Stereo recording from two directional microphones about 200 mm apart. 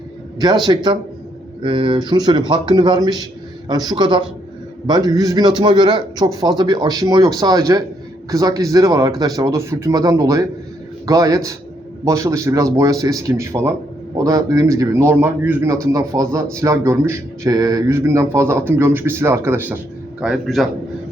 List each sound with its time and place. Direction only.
0.6 s a man's voice: 25° right (ahead or behind); by 20.7 s centre (ahead or behind)